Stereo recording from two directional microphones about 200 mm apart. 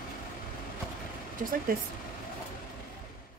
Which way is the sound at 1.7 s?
45° right (ahead or behind).